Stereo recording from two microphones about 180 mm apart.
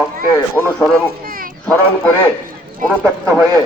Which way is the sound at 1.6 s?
10° left (ahead or behind).